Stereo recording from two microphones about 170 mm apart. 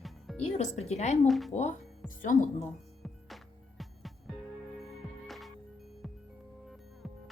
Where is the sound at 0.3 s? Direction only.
40° left (ahead or behind).